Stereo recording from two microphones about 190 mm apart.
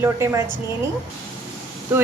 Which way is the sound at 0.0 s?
15° right (ahead or behind).